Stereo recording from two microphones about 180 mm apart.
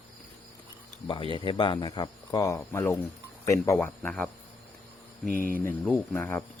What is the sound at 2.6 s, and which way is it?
Speech, 10° left (ahead or behind).